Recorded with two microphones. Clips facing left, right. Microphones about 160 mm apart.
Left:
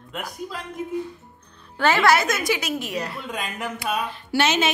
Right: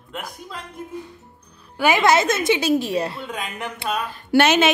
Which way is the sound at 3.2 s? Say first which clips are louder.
Right 1 dB; centre (ahead or behind).